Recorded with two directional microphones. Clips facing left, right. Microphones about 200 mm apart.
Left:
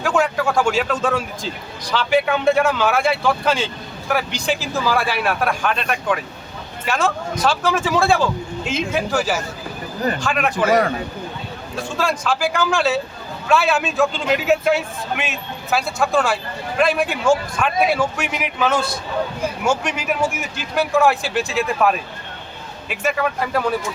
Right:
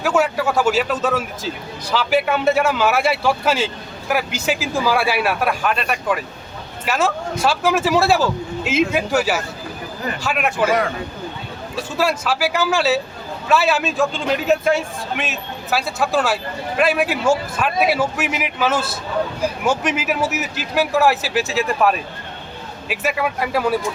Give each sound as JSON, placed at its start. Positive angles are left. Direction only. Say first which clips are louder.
{"t": 0.0, "sound": "a man's voice", "louder": "right 1 dB", "side_deg": -5}
{"t": 11.9, "sound": "a man's voice", "louder": "right 1 dB", "side_deg": -5}